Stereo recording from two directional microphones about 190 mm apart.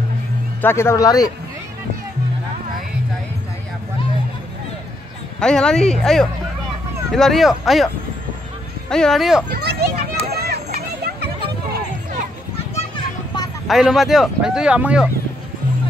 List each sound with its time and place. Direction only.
0.6 s speech: 10° left (ahead or behind)
5.4 s speech: 5° left (ahead or behind)
9.5 s children playing: 55° right (ahead or behind)
11.1 s hubbub: 55° right (ahead or behind)
12.7 s children playing: 25° left (ahead or behind)
13.7 s speech: centre (ahead or behind)